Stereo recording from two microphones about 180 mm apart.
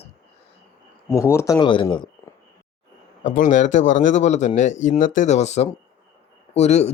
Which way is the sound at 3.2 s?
45° left (ahead or behind).